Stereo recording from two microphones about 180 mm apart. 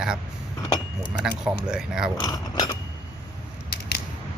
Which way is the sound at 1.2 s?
5° right (ahead or behind).